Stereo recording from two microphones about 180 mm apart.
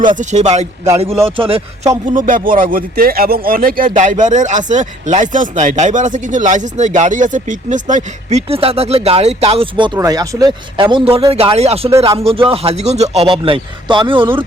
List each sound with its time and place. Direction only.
0.0 s a man's voice: 40° right (ahead or behind)
2.1 s a man's voice: 50° right (ahead or behind); by 14.4 s 30° right (ahead or behind)